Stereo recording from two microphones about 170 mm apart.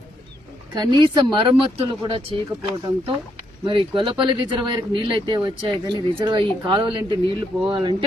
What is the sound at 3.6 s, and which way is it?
Speech, 30° right (ahead or behind).